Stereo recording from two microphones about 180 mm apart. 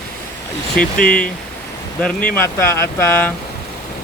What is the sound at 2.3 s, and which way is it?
Speech, 15° left (ahead or behind).